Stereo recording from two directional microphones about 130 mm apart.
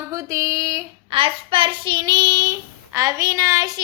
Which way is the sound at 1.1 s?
45° right (ahead or behind).